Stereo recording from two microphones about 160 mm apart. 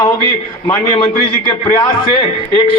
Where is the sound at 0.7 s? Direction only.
30° left (ahead or behind).